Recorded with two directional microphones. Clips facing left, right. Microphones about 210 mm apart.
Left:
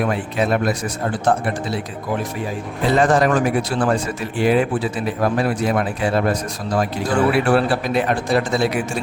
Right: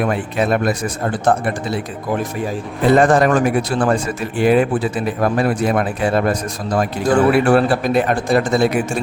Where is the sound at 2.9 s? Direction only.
50° right (ahead or behind).